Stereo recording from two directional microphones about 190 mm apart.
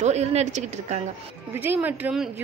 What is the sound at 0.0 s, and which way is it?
A woman's voice, 35° right (ahead or behind).